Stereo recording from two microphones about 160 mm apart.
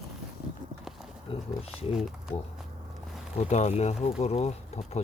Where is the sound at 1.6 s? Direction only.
40° left (ahead or behind).